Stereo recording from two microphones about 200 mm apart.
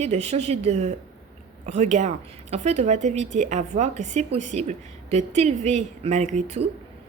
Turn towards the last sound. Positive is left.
turn(degrees=-35)  # may be behind; listen again after turning